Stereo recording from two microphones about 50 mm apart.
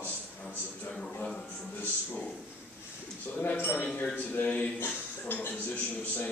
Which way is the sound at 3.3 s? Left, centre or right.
Left.